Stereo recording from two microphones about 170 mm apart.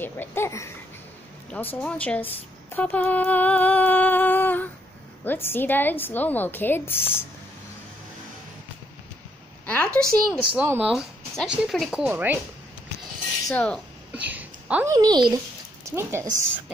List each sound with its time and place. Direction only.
0.0 s a woman's voice: 10° left (ahead or behind)
9.7 s a sound: 5° left (ahead or behind)
10.5 s speech: 10° right (ahead or behind)
13.5 s speech: 5° left (ahead or behind)
14.1 s a sound: 10° right (ahead or behind)
15.0 s a child's voice: 25° right (ahead or behind)